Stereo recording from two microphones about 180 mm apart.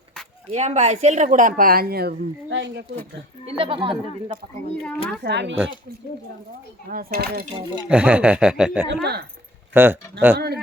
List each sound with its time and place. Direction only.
0.5 s speech: 40° right (ahead or behind); by 2.8 s 80° right
3.6 s speech: 30° right (ahead or behind)
5.2 s speech: 70° right (ahead or behind)
6.9 s a child's voice: 55° right (ahead or behind)
7.9 s speech: 5° right (ahead or behind)
8.9 s a child's voice: 65° right (ahead or behind)
9.7 s speech: 10° right (ahead or behind)
10.3 s a child's voice: 60° right (ahead or behind)